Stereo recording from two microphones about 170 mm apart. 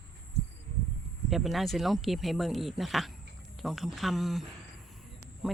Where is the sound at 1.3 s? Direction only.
Centre (ahead or behind).